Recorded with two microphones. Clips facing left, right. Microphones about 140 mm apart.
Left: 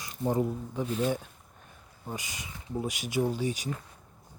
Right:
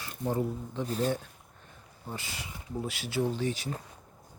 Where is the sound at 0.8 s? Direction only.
40° right (ahead or behind).